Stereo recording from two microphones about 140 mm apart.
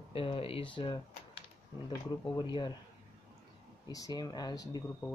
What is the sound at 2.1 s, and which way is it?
Speech, 30° left (ahead or behind).